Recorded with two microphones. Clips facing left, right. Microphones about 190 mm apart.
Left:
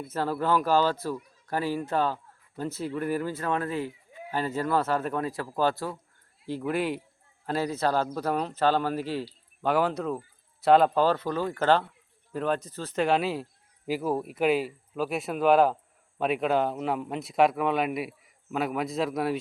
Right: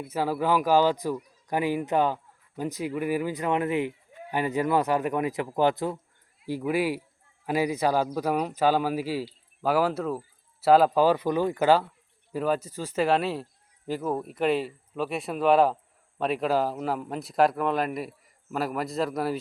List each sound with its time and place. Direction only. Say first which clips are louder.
0.0 s speech: right 2 dB; 10° right (ahead or behind)